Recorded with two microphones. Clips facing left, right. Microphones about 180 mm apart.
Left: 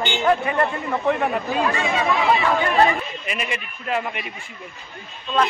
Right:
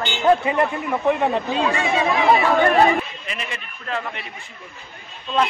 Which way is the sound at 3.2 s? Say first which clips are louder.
Left 4 dB; 15° left (ahead or behind).